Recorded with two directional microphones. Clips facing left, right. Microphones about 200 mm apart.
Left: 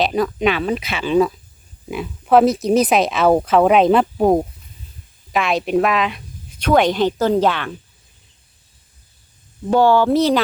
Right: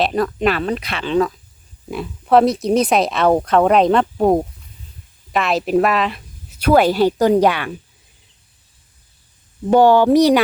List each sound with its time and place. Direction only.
0.0 s speech: centre (ahead or behind)
9.6 s speech: 15° right (ahead or behind)